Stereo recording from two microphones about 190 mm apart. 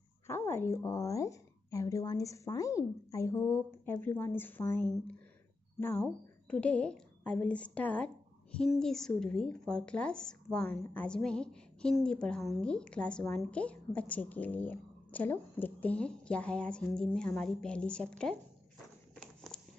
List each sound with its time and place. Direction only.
0.3 s a woman's voice: 15° left (ahead or behind)